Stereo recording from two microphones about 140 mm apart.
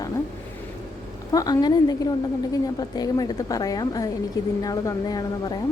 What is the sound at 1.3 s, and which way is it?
Speech, 25° left (ahead or behind).